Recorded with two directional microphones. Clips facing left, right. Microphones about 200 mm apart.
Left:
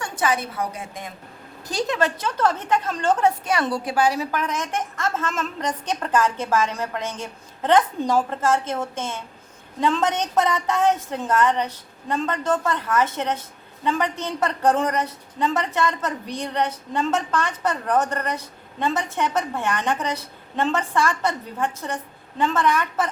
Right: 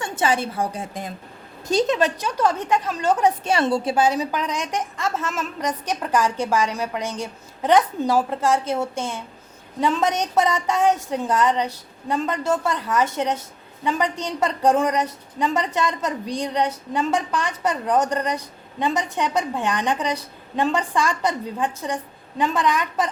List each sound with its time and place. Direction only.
0.0 s a woman's voice: 25° right (ahead or behind)
1.6 s a woman's voice: 20° right (ahead or behind)
3.4 s a woman's voice: 25° right (ahead or behind)